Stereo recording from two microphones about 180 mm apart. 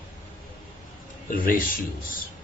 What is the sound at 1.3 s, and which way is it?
Speech, 50° left (ahead or behind).